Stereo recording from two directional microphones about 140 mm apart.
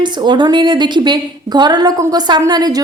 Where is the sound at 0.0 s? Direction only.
30° right (ahead or behind).